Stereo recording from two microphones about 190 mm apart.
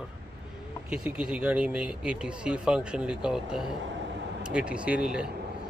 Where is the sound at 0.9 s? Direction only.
5° right (ahead or behind).